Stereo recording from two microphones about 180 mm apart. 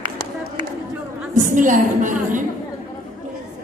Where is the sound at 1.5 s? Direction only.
45° right (ahead or behind).